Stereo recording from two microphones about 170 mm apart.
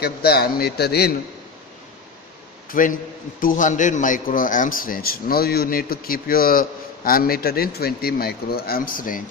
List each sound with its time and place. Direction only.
0.0 s a man's voice: 65° left (ahead or behind)
2.7 s a man's voice: 55° left (ahead or behind)